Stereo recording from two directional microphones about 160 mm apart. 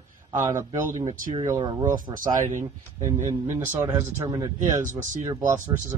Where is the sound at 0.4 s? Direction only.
15° right (ahead or behind).